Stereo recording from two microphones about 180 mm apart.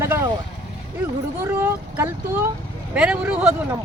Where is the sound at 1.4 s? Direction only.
15° right (ahead or behind).